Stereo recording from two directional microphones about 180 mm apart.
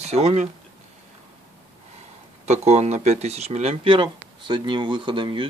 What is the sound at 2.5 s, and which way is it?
Speech, 40° right (ahead or behind).